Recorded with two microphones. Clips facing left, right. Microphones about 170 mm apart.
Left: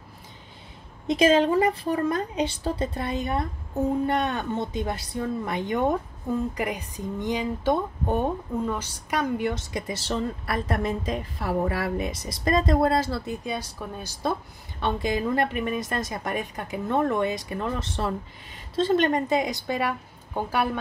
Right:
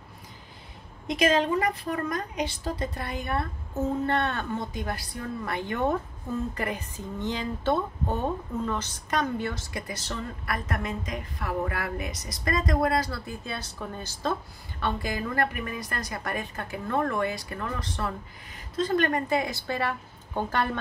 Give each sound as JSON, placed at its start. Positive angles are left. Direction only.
{"t": 1.0, "sound": "speech", "side_deg": 25}
{"t": 14.8, "sound": "a woman's voice", "side_deg": 20}